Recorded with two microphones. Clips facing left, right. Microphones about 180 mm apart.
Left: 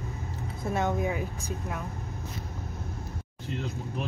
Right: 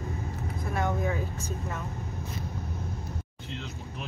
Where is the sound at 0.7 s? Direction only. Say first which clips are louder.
Left 2 dB; 20° left (ahead or behind).